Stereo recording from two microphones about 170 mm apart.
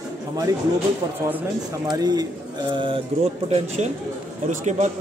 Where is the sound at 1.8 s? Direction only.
25° right (ahead or behind).